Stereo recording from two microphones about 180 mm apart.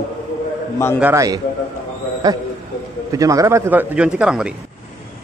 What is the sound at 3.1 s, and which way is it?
A man's voice, 20° right (ahead or behind).